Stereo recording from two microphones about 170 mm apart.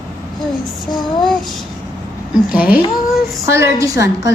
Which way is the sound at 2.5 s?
5° right (ahead or behind).